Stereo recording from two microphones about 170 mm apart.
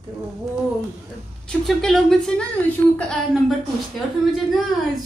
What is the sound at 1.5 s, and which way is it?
Speech, centre (ahead or behind).